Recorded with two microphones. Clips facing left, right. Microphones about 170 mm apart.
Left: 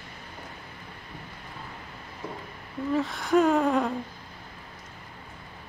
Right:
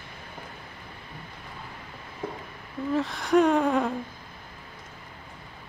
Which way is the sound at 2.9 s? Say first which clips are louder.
Right 1 dB; centre (ahead or behind).